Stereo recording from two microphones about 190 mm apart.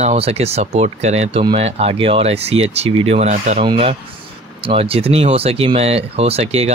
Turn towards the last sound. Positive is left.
turn(degrees=-35)  # may be behind; listen again after turning